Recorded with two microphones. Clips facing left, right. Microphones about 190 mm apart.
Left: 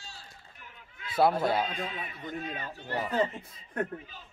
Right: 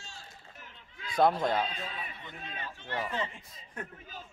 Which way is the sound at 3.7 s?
60° left (ahead or behind).